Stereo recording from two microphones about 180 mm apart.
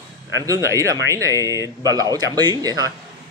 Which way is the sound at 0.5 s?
15° right (ahead or behind).